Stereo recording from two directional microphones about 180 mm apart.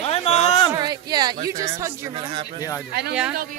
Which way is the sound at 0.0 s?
35° left (ahead or behind).